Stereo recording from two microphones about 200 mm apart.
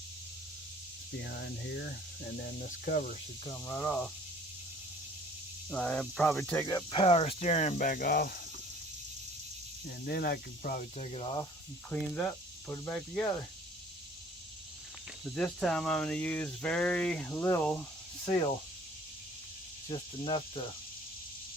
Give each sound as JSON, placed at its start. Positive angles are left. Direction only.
{"t": 1.2, "sound": "speech", "side_deg": 55}
{"t": 3.5, "sound": "speech", "side_deg": 10}
{"t": 5.7, "sound": "speech", "side_deg": 5}
{"t": 6.7, "sound": "speech", "side_deg": 20}
{"t": 9.8, "sound": "speech", "side_deg": 50}
{"t": 11.9, "sound": "speech", "side_deg": 5}
{"t": 15.2, "sound": "speech", "side_deg": 5}
{"t": 19.9, "sound": "cricket", "side_deg": 25}